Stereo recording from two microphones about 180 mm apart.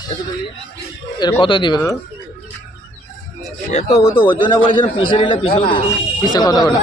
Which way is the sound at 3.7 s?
35° left (ahead or behind).